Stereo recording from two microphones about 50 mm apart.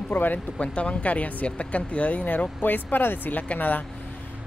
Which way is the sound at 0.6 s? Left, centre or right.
Left.